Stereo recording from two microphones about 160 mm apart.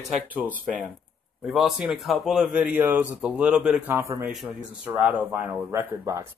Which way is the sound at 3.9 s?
15° right (ahead or behind).